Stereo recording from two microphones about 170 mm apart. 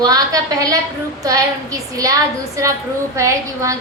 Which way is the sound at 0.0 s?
20° right (ahead or behind).